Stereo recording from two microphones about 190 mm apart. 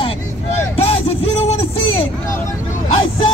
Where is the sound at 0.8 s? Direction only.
30° left (ahead or behind).